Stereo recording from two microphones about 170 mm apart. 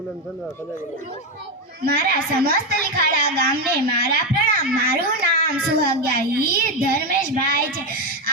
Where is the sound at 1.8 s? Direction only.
65° right (ahead or behind).